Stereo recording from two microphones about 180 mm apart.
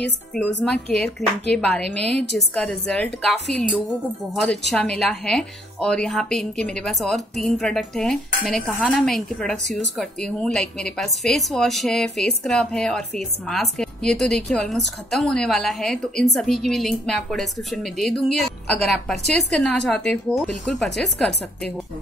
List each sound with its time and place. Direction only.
0.7 s a woman's voice: 5° left (ahead or behind)